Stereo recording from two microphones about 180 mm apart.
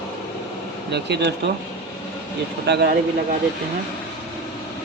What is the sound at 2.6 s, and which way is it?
Speech, 65° right (ahead or behind).